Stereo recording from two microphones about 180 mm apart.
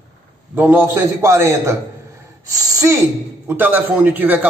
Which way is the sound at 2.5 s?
20° right (ahead or behind).